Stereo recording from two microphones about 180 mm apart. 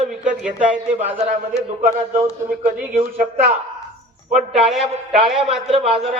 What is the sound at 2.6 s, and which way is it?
Speech, 50° right (ahead or behind).